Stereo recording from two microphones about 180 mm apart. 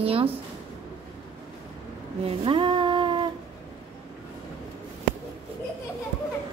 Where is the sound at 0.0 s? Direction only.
30° right (ahead or behind).